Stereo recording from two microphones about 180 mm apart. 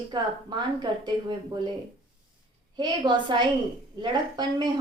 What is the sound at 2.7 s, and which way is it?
A woman's voice, 25° right (ahead or behind).